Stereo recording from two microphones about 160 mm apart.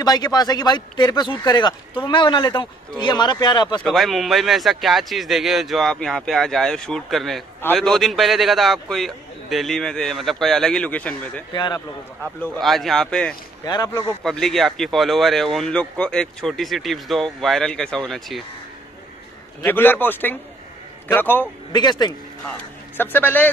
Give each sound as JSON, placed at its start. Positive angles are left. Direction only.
{"t": 0.0, "sound": "speech", "side_deg": 25}
{"t": 3.8, "sound": "a man's voice", "side_deg": 0}
{"t": 11.5, "sound": "speech", "side_deg": 25}
{"t": 12.5, "sound": "a man's voice", "side_deg": 0}
{"t": 13.7, "sound": "speech", "side_deg": 25}
{"t": 14.2, "sound": "a man's voice", "side_deg": 0}
{"t": 19.6, "sound": "a man's voice", "side_deg": 10}
{"t": 21.7, "sound": "speech", "side_deg": 25}
{"t": 22.5, "sound": "a man's voice", "side_deg": 10}